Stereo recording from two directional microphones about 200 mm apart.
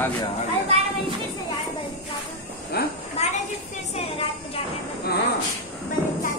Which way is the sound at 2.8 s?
50° left (ahead or behind).